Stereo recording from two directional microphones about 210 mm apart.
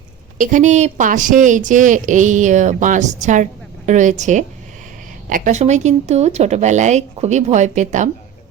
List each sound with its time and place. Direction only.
0.3 s speech: 35° right (ahead or behind)